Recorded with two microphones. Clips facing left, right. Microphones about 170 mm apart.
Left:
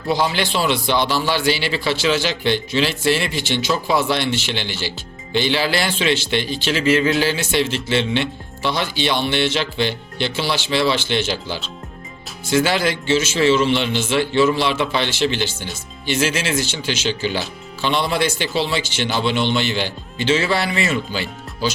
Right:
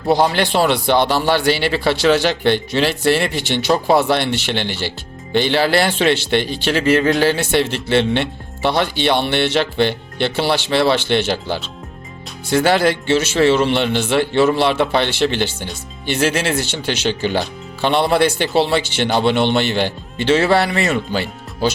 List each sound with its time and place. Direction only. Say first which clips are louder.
0.3 s a man's voice: right 4 dB; 60° right (ahead or behind)